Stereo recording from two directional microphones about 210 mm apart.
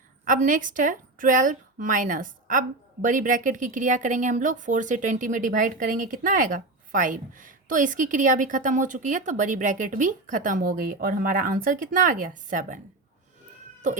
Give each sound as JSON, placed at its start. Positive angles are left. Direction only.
{"t": 0.3, "sound": "speech", "side_deg": -40}